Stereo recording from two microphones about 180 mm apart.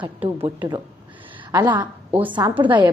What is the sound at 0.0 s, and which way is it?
A woman's voice, 25° right (ahead or behind).